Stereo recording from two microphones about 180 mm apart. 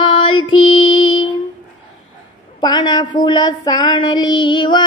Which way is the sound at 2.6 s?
25° left (ahead or behind).